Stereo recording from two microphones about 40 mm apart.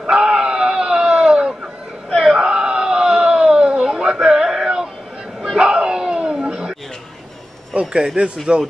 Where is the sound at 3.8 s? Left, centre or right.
Centre.